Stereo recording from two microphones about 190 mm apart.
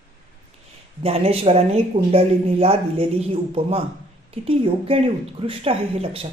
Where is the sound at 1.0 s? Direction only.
30° right (ahead or behind).